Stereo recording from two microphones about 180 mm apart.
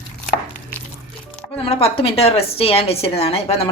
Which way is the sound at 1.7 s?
30° left (ahead or behind).